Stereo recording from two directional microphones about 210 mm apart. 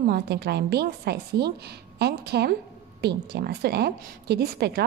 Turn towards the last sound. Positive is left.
turn(degrees=-50)  # may be behind; listen again after turning